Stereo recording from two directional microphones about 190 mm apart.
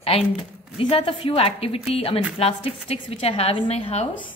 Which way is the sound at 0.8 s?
30° left (ahead or behind).